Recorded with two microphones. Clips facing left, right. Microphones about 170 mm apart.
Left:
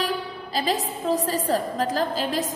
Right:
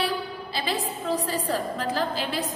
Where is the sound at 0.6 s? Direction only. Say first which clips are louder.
Left 4 dB; 40° left (ahead or behind).